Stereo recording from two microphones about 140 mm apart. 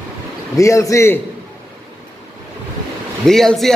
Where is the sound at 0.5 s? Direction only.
20° left (ahead or behind).